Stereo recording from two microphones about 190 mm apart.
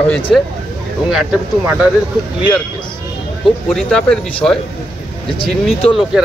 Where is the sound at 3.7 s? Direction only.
5° left (ahead or behind).